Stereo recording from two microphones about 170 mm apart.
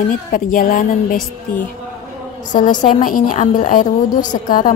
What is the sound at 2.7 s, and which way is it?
Speech, 30° left (ahead or behind).